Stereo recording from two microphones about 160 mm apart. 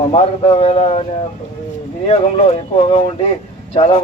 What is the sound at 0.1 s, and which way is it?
Speech, 40° left (ahead or behind).